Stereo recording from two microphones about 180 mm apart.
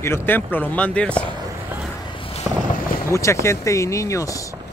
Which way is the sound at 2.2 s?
30° left (ahead or behind).